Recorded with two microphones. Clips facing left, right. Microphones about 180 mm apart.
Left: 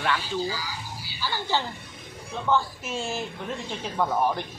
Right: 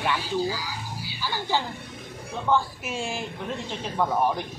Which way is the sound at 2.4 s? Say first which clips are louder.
Right 1 dB; centre (ahead or behind).